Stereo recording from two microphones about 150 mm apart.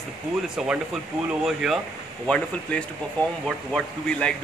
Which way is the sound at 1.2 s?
5° right (ahead or behind).